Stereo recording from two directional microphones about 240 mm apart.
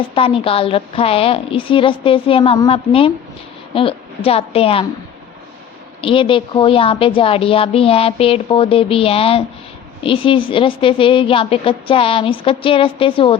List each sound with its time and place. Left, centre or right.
0.1 s a woman's voice: left
6.0 s a woman's voice: left